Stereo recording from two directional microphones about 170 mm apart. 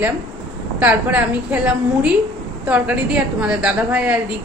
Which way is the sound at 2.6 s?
5° right (ahead or behind).